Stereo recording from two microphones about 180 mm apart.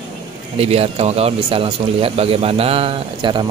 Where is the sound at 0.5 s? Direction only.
35° right (ahead or behind).